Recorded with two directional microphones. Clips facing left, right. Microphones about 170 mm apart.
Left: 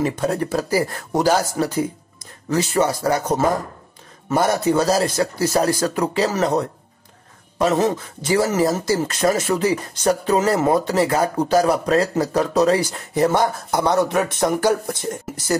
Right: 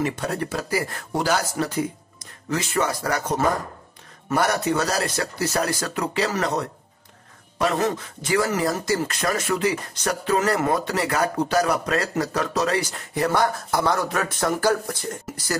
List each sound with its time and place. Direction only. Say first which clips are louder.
0.0 s speech: left 5 dB; 35° left (ahead or behind)
7.5 s speech: left 4 dB; 30° left (ahead or behind)